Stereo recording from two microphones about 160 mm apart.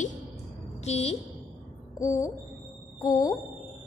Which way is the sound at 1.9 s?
20° left (ahead or behind).